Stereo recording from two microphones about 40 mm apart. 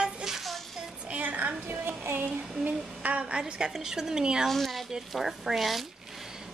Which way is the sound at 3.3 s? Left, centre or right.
Right.